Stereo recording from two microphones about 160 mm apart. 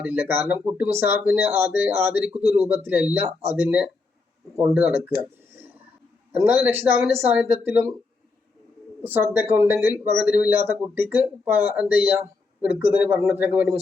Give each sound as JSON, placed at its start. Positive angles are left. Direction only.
{"t": 0.0, "sound": "speech", "side_deg": -10}
{"t": 2.3, "sound": "speech", "side_deg": -40}
{"t": 2.6, "sound": "speech", "side_deg": -10}
{"t": 6.4, "sound": "speech", "side_deg": -15}
{"t": 9.0, "sound": "speech", "side_deg": -10}